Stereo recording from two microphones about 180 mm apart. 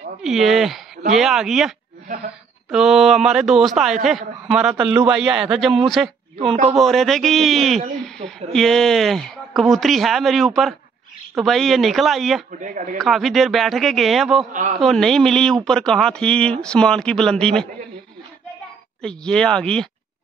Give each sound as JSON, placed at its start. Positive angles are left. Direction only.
{"t": 0.2, "sound": "a man's voice", "side_deg": 0}
{"t": 2.7, "sound": "a man's voice", "side_deg": -5}
{"t": 6.3, "sound": "a man's voice", "side_deg": -35}
{"t": 6.7, "sound": "a man's voice", "side_deg": 0}
{"t": 8.2, "sound": "a man's voice", "side_deg": -35}
{"t": 8.5, "sound": "a man's voice", "side_deg": 0}
{"t": 12.5, "sound": "speech", "side_deg": -45}
{"t": 13.0, "sound": "a man's voice", "side_deg": 0}
{"t": 14.5, "sound": "speech", "side_deg": -45}
{"t": 14.8, "sound": "a man's voice", "side_deg": 0}
{"t": 19.0, "sound": "a man's voice", "side_deg": 5}